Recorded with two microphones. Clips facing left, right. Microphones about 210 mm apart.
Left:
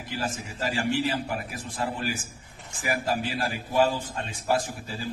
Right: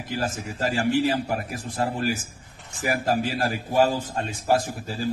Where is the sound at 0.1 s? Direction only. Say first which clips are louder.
Right 4 dB; 45° right (ahead or behind).